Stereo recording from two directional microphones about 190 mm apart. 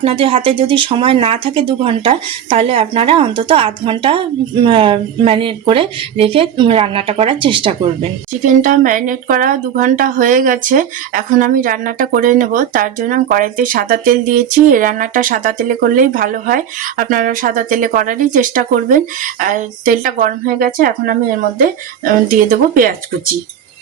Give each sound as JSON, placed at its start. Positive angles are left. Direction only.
{"t": 0.0, "sound": "speech", "side_deg": -30}
{"t": 8.3, "sound": "a woman's voice", "side_deg": -45}